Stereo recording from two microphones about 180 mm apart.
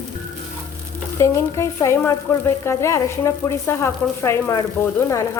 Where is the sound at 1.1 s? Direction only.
15° left (ahead or behind).